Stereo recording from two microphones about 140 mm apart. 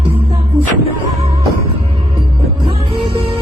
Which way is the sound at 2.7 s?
40° right (ahead or behind).